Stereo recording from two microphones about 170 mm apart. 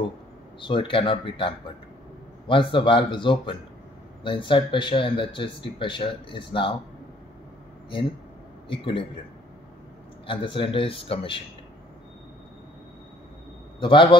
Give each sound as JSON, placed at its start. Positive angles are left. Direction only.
{"t": 0.6, "sound": "speech", "side_deg": 30}
{"t": 8.6, "sound": "speech", "side_deg": 30}
{"t": 10.2, "sound": "a man's voice", "side_deg": 30}
{"t": 13.7, "sound": "a man's voice", "side_deg": 30}